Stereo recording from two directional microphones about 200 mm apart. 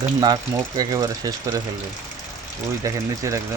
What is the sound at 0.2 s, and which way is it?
Speech, 20° right (ahead or behind).